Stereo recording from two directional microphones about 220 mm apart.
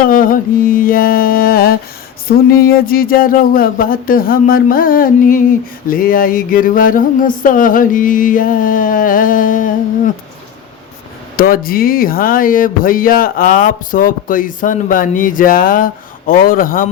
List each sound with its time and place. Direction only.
0.0 s speech: 40° left (ahead or behind)
11.3 s speech: 40° left (ahead or behind)